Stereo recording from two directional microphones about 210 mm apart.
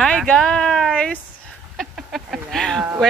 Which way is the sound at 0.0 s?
5° left (ahead or behind).